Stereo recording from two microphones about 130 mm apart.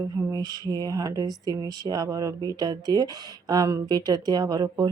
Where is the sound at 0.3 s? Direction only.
30° right (ahead or behind).